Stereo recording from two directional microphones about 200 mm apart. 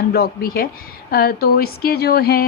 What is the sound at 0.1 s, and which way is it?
Speech, 50° left (ahead or behind).